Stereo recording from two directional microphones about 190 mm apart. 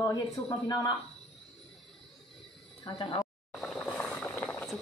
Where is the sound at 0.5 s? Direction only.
15° left (ahead or behind).